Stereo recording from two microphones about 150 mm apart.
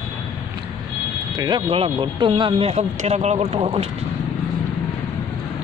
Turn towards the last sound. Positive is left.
turn(degrees=-40)  # may be behind; listen again after turning